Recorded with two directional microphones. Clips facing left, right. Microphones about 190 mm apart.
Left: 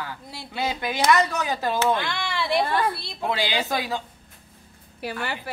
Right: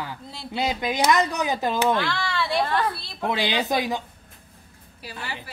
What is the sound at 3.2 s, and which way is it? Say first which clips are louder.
Speech: right 1 dB; 20° right (ahead or behind).